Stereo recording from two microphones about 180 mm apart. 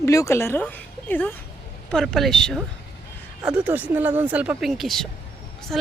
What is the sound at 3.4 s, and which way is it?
Speech, 10° right (ahead or behind).